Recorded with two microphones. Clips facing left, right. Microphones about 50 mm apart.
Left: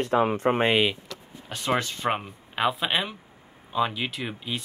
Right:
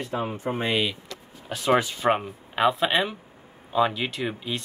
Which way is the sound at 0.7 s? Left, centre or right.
Left.